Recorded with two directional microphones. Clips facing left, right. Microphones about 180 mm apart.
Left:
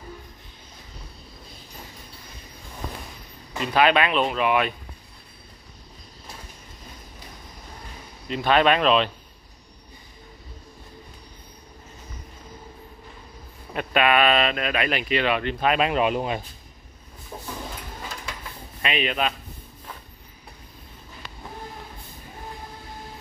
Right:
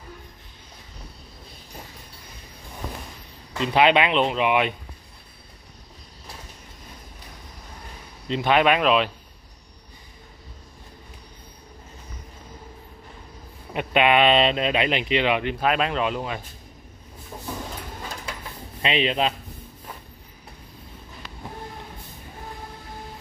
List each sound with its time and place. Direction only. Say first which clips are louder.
3.6 s speech: right 1 dB; 20° right (ahead or behind)
8.3 s speech: even; 15° right (ahead or behind)
13.7 s speech: right 1 dB; 20° right (ahead or behind)
15.6 s speech: left 2 dB; centre (ahead or behind)
15.9 s speech: left 3 dB; 15° left (ahead or behind)
18.8 s speech: right 3 dB; 25° right (ahead or behind)